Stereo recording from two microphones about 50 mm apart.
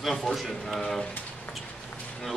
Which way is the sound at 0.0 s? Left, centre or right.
Centre.